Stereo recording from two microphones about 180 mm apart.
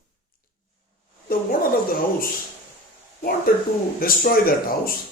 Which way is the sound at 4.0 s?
55° left (ahead or behind).